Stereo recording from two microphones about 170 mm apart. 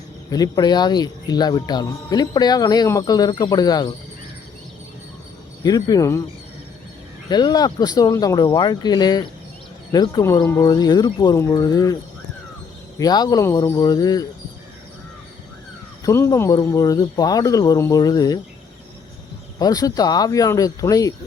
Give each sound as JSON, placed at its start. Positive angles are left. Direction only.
{"t": 0.3, "sound": "speech", "side_deg": 20}
{"t": 5.6, "sound": "speech", "side_deg": 20}
{"t": 7.3, "sound": "speech", "side_deg": 25}
{"t": 13.0, "sound": "speech", "side_deg": 25}
{"t": 16.0, "sound": "speech", "side_deg": 20}
{"t": 19.5, "sound": "speech", "side_deg": 20}